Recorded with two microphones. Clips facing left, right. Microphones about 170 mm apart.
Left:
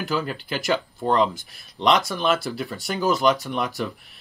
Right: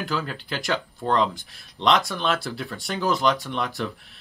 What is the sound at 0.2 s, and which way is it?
Speech, 10° left (ahead or behind).